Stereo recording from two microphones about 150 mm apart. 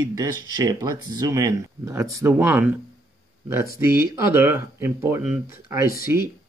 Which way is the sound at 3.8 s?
15° right (ahead or behind).